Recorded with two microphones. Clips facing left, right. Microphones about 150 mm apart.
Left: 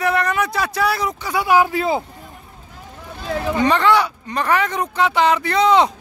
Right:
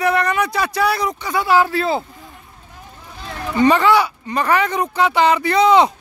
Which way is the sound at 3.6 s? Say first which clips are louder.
Right 3 dB; 5° right (ahead or behind).